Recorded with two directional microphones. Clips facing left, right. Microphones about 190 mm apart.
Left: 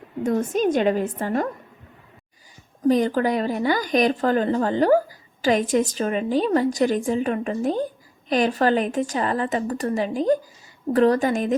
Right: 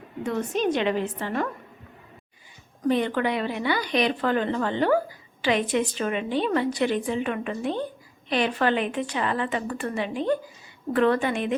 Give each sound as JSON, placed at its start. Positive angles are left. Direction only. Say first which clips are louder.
{"t": 0.2, "sound": "a woman's voice", "louder": "left 4 dB", "side_deg": 45}
{"t": 2.8, "sound": "a woman's voice", "louder": "left 4 dB", "side_deg": 40}